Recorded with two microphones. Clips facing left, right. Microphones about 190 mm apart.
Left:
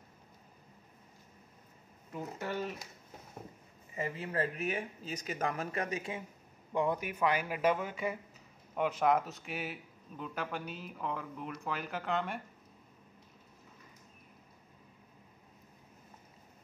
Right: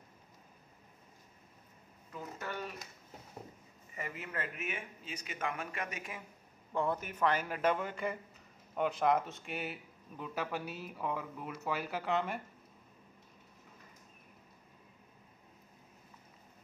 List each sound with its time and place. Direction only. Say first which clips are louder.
2.1 s speech: left 4 dB; 25° left (ahead or behind)
3.9 s speech: left 6 dB; 30° left (ahead or behind)
6.7 s a man's voice: left 2 dB; 15° left (ahead or behind); by 12.4 s centre (ahead or behind)